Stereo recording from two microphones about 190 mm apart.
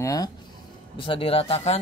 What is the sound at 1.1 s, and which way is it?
Speech, 30° left (ahead or behind).